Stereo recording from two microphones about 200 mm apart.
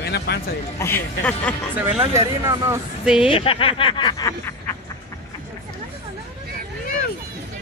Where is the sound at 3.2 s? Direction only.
25° left (ahead or behind).